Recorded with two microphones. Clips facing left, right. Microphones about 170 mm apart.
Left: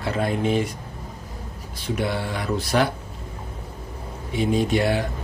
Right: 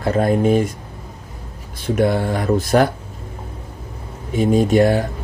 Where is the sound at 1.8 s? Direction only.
50° right (ahead or behind).